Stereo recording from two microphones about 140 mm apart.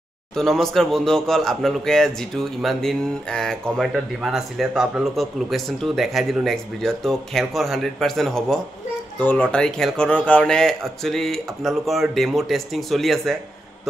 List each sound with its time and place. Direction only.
0.4 s speech: 5° left (ahead or behind)